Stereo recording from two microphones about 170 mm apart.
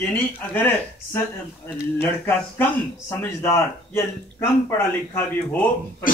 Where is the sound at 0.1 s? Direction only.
10° left (ahead or behind).